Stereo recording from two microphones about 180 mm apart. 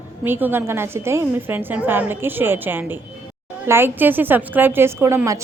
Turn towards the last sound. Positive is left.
turn(degrees=-15)  # may be behind; listen again after turning